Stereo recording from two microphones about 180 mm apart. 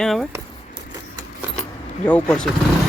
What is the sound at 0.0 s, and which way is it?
Speech, centre (ahead or behind).